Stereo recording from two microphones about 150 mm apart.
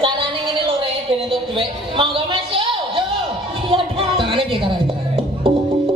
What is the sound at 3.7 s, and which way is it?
Music, 35° right (ahead or behind).